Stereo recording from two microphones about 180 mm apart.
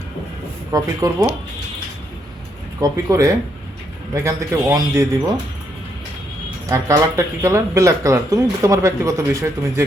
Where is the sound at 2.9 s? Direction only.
15° right (ahead or behind).